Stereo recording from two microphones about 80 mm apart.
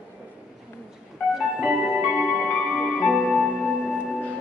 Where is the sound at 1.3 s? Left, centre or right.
Centre.